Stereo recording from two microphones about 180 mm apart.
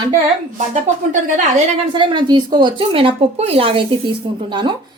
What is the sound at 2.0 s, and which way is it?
Speech, 25° right (ahead or behind).